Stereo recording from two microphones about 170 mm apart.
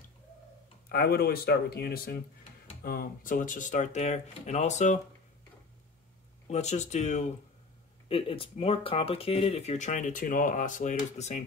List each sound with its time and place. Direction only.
0.8 s speech: 65° left (ahead or behind); by 4.9 s 45° left (ahead or behind)
6.4 s speech: 40° left (ahead or behind)